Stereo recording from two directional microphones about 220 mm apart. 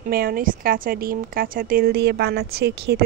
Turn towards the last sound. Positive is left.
turn(degrees=-50)  # may be behind; listen again after turning